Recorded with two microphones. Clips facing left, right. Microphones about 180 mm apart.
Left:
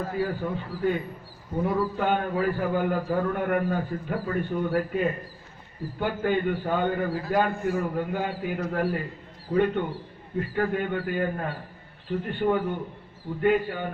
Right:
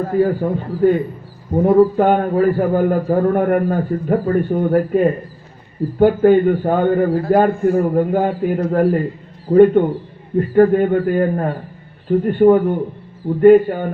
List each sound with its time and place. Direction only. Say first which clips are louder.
0.0 s a man's voice: right 12 dB; 45° right (ahead or behind)